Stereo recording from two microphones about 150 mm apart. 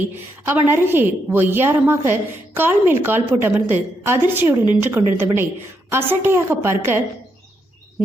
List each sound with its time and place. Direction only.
0.4 s a woman's voice: 15° right (ahead or behind)